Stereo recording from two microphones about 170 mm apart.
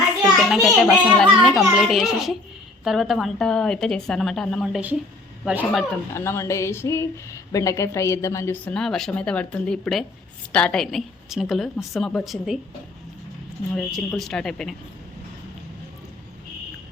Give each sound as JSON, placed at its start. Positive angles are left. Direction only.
{"t": 0.2, "sound": "a woman's voice", "side_deg": 0}
{"t": 6.1, "sound": "speech", "side_deg": 15}
{"t": 8.7, "sound": "a woman's voice", "side_deg": 5}
{"t": 13.7, "sound": "a woman's voice", "side_deg": 0}